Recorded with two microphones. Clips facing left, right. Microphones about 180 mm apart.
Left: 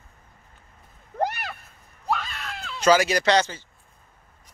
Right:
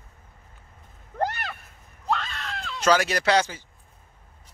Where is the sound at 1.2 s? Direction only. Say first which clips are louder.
Left 1 dB; 15° left (ahead or behind); by 3.6 s 10° right (ahead or behind).